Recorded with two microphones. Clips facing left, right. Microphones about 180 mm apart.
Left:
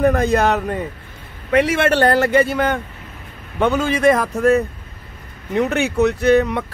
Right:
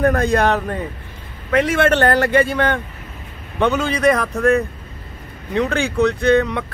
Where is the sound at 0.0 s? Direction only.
Centre (ahead or behind).